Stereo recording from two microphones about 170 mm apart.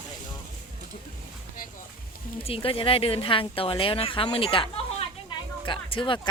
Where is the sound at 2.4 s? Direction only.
35° left (ahead or behind).